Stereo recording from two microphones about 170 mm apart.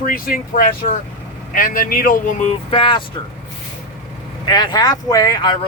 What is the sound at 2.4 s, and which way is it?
Speech, 30° left (ahead or behind).